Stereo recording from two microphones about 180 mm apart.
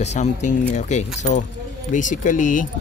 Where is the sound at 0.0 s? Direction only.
40° left (ahead or behind).